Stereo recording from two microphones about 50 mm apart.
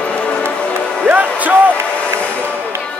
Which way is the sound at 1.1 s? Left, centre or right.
Right.